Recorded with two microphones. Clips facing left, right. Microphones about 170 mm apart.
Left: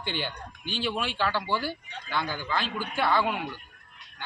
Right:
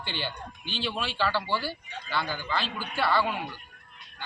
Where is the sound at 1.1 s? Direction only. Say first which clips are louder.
Even; 15° left (ahead or behind).